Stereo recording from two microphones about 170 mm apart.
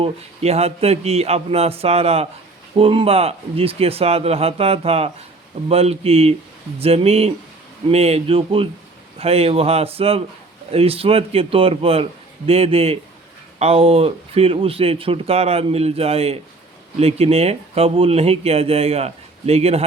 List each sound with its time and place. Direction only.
0.0 s speech: 40° right (ahead or behind)